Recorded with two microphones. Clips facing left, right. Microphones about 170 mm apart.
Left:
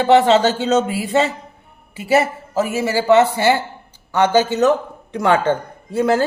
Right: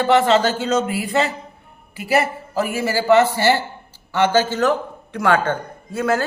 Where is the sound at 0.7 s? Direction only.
25° left (ahead or behind).